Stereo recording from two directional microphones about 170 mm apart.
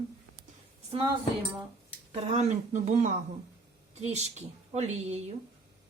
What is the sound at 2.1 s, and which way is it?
Speech, 45° right (ahead or behind).